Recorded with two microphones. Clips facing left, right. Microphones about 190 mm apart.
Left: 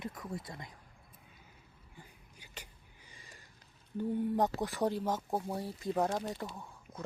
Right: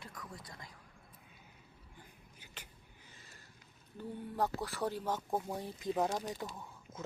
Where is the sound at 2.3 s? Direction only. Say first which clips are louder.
Left 4 dB; 10° left (ahead or behind).